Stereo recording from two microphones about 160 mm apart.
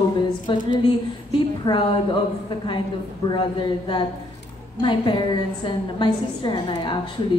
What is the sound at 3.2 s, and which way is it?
Speech, 25° left (ahead or behind).